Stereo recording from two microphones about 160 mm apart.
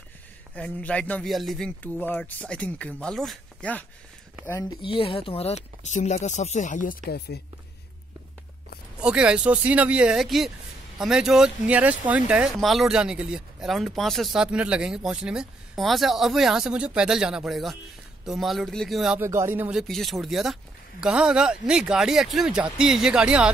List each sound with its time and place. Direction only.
0.6 s speech: 5° left (ahead or behind)
4.8 s speech: 35° left (ahead or behind); by 7.3 s 85° left
9.0 s speech: 5° right (ahead or behind)
19.1 s speech: 15° right (ahead or behind)
19.8 s speech: centre (ahead or behind)